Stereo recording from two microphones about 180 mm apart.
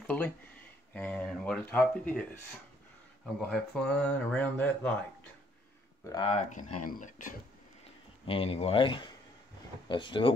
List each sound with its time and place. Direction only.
0.0 s speech: 10° left (ahead or behind)
3.3 s speech: 5° left (ahead or behind)
6.0 s speech: 25° left (ahead or behind)
6.3 s speech: 45° left (ahead or behind)
8.3 s speech: 30° left (ahead or behind)